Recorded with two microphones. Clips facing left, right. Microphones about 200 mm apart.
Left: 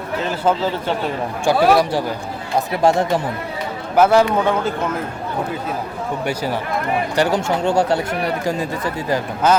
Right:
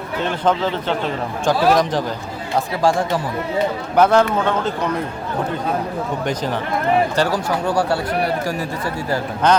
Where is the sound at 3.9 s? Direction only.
5° left (ahead or behind).